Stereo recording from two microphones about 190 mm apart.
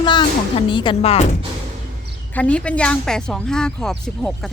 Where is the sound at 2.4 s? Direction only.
5° left (ahead or behind).